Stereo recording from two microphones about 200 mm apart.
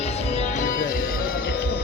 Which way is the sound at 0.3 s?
40° left (ahead or behind).